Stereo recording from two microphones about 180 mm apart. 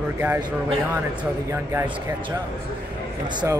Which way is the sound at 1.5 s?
15° right (ahead or behind).